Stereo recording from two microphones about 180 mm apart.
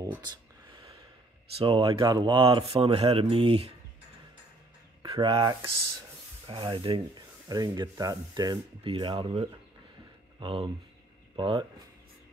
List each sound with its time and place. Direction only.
0.0 s a sound: 20° right (ahead or behind)
1.6 s speech: 30° right (ahead or behind)
5.1 s speech: 25° right (ahead or behind)